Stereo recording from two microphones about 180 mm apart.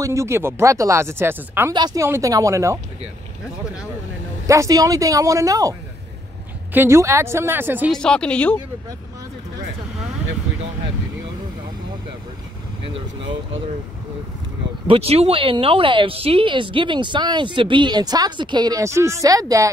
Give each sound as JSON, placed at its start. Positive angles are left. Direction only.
{"t": 0.0, "sound": "speech", "side_deg": -15}
{"t": 1.7, "sound": "speech", "side_deg": -25}
{"t": 4.5, "sound": "speech", "side_deg": -20}
{"t": 7.9, "sound": "speech", "side_deg": 5}
{"t": 14.9, "sound": "speech", "side_deg": -35}